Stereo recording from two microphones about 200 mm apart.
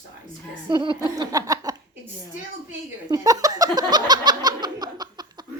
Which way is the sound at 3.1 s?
20° right (ahead or behind).